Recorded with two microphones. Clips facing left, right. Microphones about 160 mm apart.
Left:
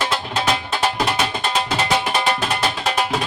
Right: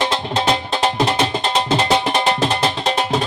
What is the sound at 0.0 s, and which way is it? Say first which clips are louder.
Music: right 3 dB; 25° right (ahead or behind).